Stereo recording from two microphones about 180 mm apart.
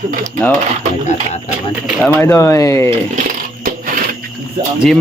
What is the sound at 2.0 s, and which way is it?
Speech, 10° left (ahead or behind).